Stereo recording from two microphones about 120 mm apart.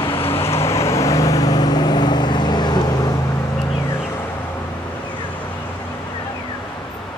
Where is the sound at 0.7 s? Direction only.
25° left (ahead or behind).